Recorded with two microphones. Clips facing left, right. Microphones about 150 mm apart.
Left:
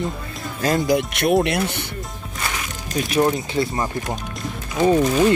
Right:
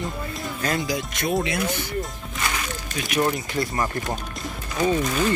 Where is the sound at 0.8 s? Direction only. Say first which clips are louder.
Left 7 dB; 65° left (ahead or behind).